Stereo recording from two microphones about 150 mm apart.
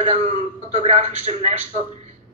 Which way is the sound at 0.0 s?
45° right (ahead or behind).